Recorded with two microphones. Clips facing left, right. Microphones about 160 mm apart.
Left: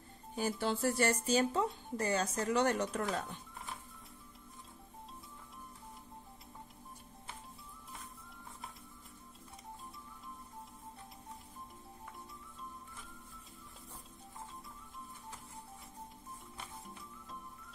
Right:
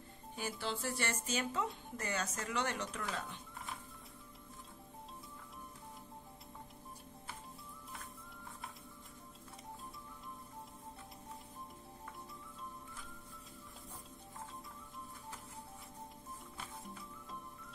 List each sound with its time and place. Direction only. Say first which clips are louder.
0.4 s speech: left 7 dB; 45° left (ahead or behind)